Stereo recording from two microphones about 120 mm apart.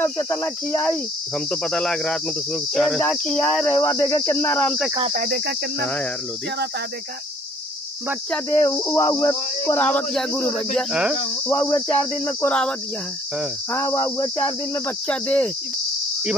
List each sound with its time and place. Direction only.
0.0 s cricket: 20° left (ahead or behind)
1.5 s speech: 10° left (ahead or behind)
2.7 s cricket: 5° left (ahead or behind)
3.1 s speech: 10° left (ahead or behind)
3.7 s cricket: 20° left (ahead or behind)
8.5 s cricket: 20° left (ahead or behind)
8.9 s speech: 25° left (ahead or behind); by 10.9 s 5° left (ahead or behind)
10.9 s cricket: 5° right (ahead or behind)
11.5 s cricket: 30° left (ahead or behind)
11.9 s speech: 20° left (ahead or behind)
13.7 s cricket: 25° left (ahead or behind)
15.0 s speech: 10° left (ahead or behind)